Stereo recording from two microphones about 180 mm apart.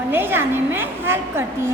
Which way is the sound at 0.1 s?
10° right (ahead or behind).